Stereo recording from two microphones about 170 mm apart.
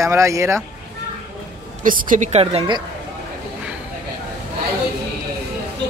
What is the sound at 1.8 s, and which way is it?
Speech, 50° right (ahead or behind).